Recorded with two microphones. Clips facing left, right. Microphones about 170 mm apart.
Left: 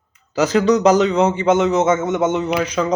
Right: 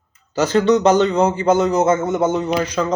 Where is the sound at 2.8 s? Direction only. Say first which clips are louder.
Left 2 dB; 5° left (ahead or behind).